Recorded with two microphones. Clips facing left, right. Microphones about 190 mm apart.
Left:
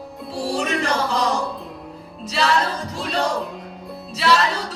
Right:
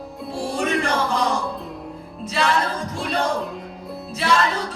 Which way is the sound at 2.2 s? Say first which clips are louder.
Even; 50° right (ahead or behind).